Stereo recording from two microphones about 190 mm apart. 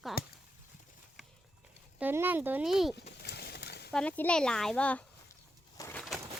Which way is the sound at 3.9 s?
5° left (ahead or behind).